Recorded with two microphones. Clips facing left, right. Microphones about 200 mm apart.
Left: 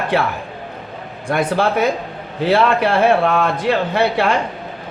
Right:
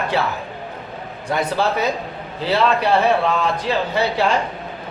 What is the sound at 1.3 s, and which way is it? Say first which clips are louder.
A man's voice: left 3 dB; 50° left (ahead or behind).